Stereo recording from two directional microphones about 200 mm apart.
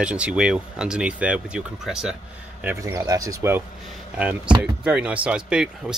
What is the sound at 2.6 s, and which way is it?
Speech, 15° right (ahead or behind).